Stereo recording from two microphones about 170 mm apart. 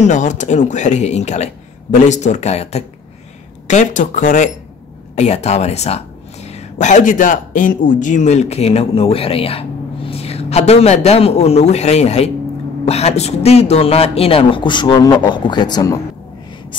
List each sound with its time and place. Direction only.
0.0 s a man's voice: 45° left (ahead or behind); by 16.0 s 20° left (ahead or behind)